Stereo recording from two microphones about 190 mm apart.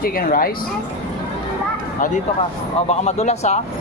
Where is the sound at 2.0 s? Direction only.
45° left (ahead or behind).